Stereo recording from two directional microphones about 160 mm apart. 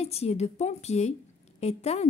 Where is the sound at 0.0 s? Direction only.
40° left (ahead or behind).